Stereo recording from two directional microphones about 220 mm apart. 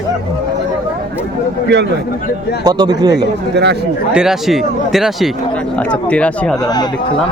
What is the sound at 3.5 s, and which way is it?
Speech, 50° right (ahead or behind).